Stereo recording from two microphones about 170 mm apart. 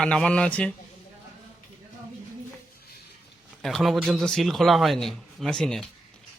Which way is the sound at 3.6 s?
Centre (ahead or behind).